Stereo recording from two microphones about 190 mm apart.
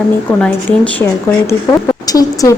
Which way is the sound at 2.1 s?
20° left (ahead or behind).